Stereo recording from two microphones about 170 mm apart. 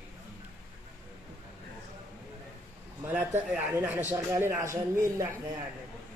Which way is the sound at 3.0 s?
10° right (ahead or behind).